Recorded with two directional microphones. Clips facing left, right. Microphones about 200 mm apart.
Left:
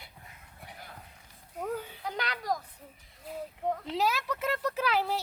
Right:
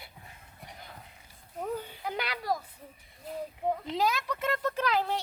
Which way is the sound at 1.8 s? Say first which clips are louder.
Right 1 dB; centre (ahead or behind).